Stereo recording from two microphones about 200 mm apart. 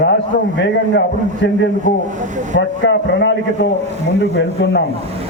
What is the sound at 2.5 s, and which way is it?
A man's voice, 60° left (ahead or behind).